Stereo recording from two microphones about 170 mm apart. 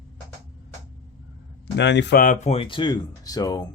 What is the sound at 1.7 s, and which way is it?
Speech, 90° left.